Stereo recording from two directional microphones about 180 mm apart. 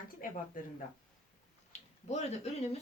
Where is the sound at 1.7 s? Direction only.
40° left (ahead or behind).